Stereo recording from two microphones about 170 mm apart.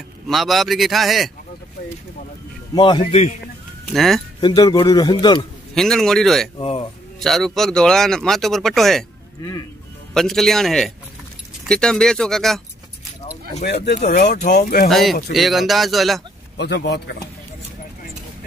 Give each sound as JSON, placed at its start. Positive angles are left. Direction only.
{"t": 0.3, "sound": "speech", "side_deg": 0}
{"t": 2.7, "sound": "a man's voice", "side_deg": 25}
{"t": 3.1, "sound": "a man's voice", "side_deg": 40}
{"t": 3.9, "sound": "speech", "side_deg": 0}
{"t": 4.4, "sound": "a man's voice", "side_deg": 25}
{"t": 5.8, "sound": "speech", "side_deg": 0}
{"t": 6.6, "sound": "speech", "side_deg": 35}
{"t": 7.2, "sound": "speech", "side_deg": 0}
{"t": 10.1, "sound": "speech", "side_deg": 0}
{"t": 13.8, "sound": "speech", "side_deg": 45}
{"t": 14.6, "sound": "speech", "side_deg": 65}
{"t": 14.9, "sound": "speech", "side_deg": 0}
{"t": 16.5, "sound": "speech", "side_deg": 85}